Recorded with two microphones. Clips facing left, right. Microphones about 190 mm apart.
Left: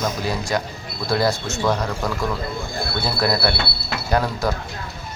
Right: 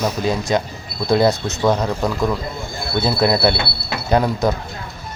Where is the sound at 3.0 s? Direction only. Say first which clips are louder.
Right 5 dB; 20° right (ahead or behind).